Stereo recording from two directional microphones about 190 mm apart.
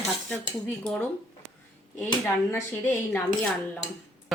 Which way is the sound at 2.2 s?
10° left (ahead or behind).